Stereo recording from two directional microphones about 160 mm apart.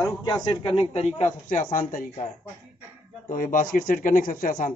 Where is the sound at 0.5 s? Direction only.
35° left (ahead or behind); by 2.0 s 55° left (ahead or behind).